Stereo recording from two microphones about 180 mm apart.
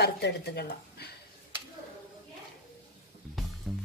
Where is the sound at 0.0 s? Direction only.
65° left (ahead or behind).